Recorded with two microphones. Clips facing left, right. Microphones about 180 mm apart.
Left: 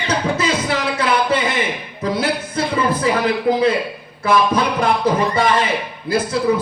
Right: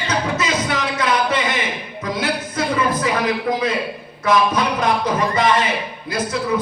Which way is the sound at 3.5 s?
30° left (ahead or behind).